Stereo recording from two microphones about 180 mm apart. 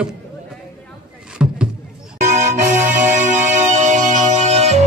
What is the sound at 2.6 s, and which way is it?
Music, 40° right (ahead or behind).